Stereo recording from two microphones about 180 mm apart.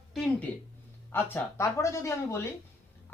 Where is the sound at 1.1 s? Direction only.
15° left (ahead or behind).